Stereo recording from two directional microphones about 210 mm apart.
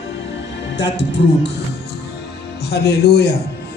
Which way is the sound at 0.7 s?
55° left (ahead or behind).